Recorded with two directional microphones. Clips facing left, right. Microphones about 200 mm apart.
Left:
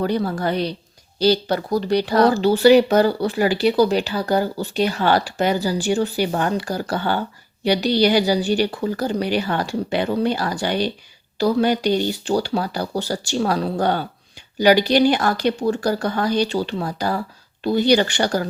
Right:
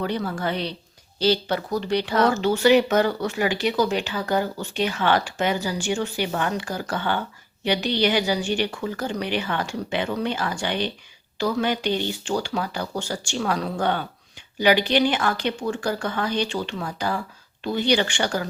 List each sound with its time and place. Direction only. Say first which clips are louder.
0.0 s speech: left 5 dB; 35° left (ahead or behind)